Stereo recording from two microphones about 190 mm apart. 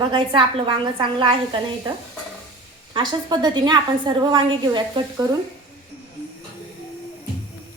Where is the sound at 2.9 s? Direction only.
25° right (ahead or behind).